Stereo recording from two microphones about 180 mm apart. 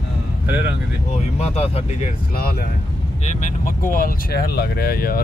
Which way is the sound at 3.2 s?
50° left (ahead or behind).